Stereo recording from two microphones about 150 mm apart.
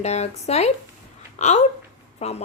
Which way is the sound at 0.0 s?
45° left (ahead or behind).